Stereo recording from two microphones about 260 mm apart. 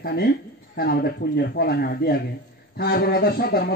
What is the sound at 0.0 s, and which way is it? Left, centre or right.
Speech, left.